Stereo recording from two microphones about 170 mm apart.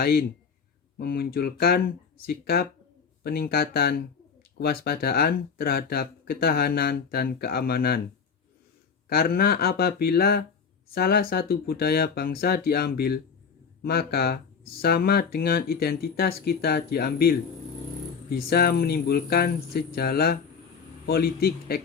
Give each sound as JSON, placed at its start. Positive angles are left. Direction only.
{"t": 0.0, "sound": "speech", "side_deg": 65}
{"t": 9.0, "sound": "speech", "side_deg": 60}